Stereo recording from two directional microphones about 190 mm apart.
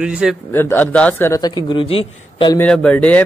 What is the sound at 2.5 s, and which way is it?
Speech, 5° left (ahead or behind).